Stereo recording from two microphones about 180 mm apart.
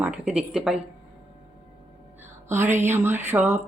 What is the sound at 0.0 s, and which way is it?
Speech, 5° right (ahead or behind).